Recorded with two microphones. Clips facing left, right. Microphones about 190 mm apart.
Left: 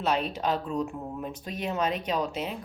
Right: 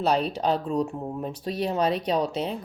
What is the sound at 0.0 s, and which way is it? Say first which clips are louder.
Speech: right 4 dB; 35° right (ahead or behind).